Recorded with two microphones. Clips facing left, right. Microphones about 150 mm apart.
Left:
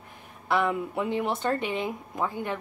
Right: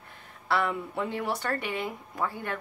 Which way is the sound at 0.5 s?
15° left (ahead or behind).